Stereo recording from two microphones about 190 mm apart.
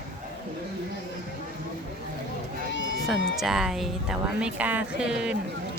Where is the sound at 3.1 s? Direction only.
Centre (ahead or behind).